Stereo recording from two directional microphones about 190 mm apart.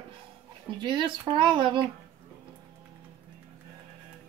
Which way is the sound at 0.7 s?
25° right (ahead or behind).